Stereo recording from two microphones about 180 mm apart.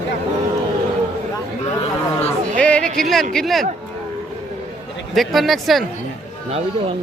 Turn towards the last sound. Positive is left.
turn(degrees=0)  # may be behind; listen again after turning